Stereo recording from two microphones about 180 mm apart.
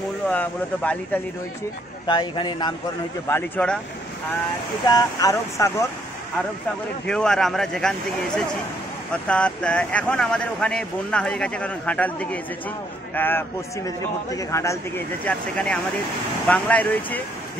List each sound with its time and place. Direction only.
0.3 s a man's voice: 10° left (ahead or behind)
2.0 s a man's voice: 25° left (ahead or behind)
3.3 s a man's voice: 10° left (ahead or behind)
4.8 s a man's voice: 20° left (ahead or behind)
7.1 s speech: 5° left (ahead or behind)
9.1 s a man's voice: 5° left (ahead or behind)